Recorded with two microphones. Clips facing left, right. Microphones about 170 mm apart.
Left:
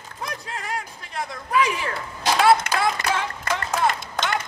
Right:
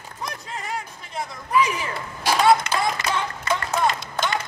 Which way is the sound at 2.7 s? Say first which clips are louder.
Even; 55° left (ahead or behind).